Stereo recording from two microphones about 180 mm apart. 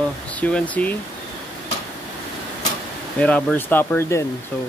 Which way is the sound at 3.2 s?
10° left (ahead or behind).